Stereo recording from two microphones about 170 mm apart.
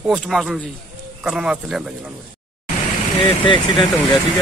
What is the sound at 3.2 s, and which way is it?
Speech, 30° left (ahead or behind).